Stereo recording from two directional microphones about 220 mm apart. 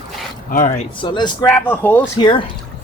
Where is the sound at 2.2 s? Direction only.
20° left (ahead or behind).